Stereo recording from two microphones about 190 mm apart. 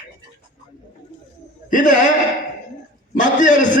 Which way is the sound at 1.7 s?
45° left (ahead or behind).